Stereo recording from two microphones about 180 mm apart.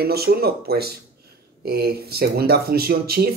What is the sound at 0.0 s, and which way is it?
Speech, 60° right (ahead or behind).